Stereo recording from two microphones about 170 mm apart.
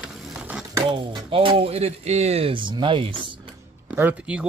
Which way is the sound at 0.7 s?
30° right (ahead or behind).